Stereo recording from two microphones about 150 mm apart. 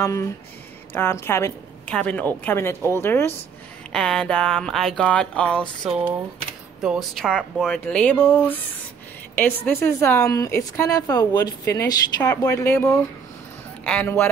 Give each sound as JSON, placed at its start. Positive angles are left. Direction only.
{"t": 0.0, "sound": "a woman's voice", "side_deg": 20}
{"t": 3.9, "sound": "a woman's voice", "side_deg": 5}